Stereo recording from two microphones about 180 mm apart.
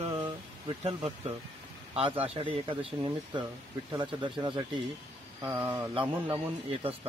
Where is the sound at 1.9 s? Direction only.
30° right (ahead or behind).